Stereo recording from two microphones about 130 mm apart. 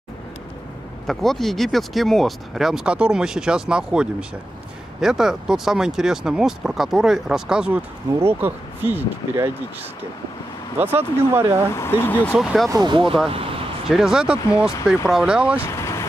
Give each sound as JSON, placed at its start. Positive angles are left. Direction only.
{"t": 1.0, "sound": "speech", "side_deg": 0}
{"t": 8.1, "sound": "speech", "side_deg": -20}
{"t": 10.8, "sound": "speech", "side_deg": -15}
{"t": 11.7, "sound": "speech", "side_deg": 20}
{"t": 12.4, "sound": "speech", "side_deg": 0}
{"t": 12.7, "sound": "speech", "side_deg": -35}
{"t": 13.8, "sound": "speech", "side_deg": -5}
{"t": 15.6, "sound": "vehicle", "side_deg": 20}